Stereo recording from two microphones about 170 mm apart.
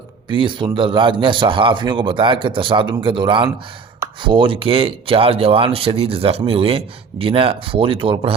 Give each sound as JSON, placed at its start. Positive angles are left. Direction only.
{"t": 0.3, "sound": "a man's voice", "side_deg": -30}